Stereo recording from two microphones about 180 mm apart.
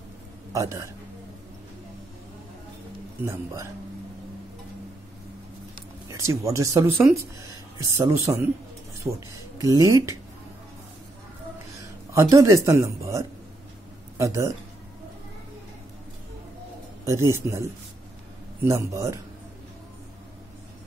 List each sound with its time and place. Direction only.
0.5 s speech: 15° right (ahead or behind)
6.0 s speech: 15° right (ahead or behind)
9.6 s speech: 20° right (ahead or behind)
11.8 s speech: 15° right (ahead or behind)
17.0 s speech: 15° right (ahead or behind)